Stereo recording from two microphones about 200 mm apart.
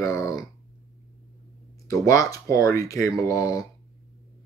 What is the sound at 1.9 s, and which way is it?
Speech, 15° left (ahead or behind).